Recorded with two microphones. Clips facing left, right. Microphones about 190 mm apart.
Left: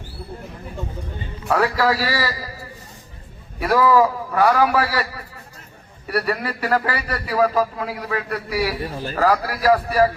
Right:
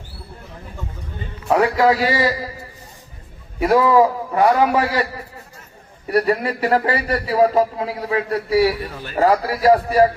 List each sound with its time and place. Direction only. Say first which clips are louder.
1.5 s a man's voice: right 4 dB; 20° right (ahead or behind)
3.6 s a man's voice: right 2 dB; 25° right (ahead or behind)
6.1 s a man's voice: right 5 dB; 25° right (ahead or behind)
8.8 s a man's voice: left 3 dB; 25° left (ahead or behind)
9.1 s a man's voice: right 3 dB; 25° right (ahead or behind)